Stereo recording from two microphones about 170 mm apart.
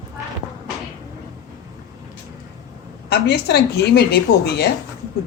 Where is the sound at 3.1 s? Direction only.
75° left (ahead or behind).